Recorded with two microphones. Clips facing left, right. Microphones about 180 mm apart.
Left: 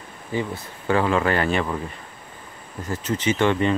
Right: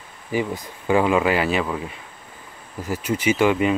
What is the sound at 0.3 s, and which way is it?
Speech, 15° right (ahead or behind).